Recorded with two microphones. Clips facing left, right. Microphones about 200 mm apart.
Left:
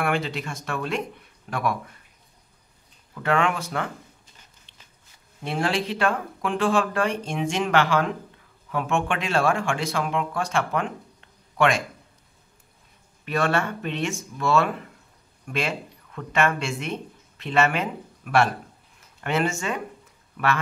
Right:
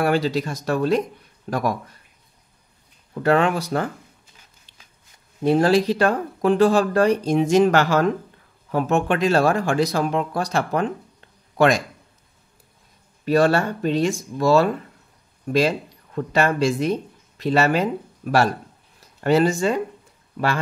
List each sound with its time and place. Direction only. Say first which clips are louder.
0.0 s speech: right 6 dB; 35° right (ahead or behind)
3.2 s speech: right 5 dB; 35° right (ahead or behind)
4.7 s a sound: even; 40° right (ahead or behind)
5.4 s speech: right 9 dB; 40° right (ahead or behind)
13.2 s speech: right 7 dB; 35° right (ahead or behind)